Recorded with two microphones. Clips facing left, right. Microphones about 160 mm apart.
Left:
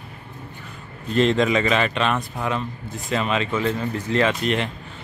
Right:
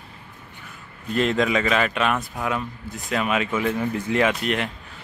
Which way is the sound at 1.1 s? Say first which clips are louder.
Left 2 dB; 5° right (ahead or behind).